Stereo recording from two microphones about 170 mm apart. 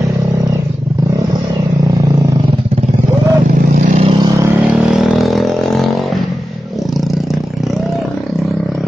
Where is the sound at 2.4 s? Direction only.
35° right (ahead or behind).